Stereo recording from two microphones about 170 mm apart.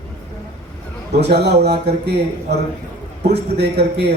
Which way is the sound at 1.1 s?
75° right (ahead or behind).